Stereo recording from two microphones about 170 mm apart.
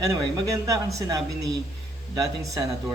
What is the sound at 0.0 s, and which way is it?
Speech, 20° right (ahead or behind).